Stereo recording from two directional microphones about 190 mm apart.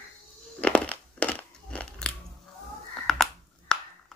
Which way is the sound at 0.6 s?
5° left (ahead or behind).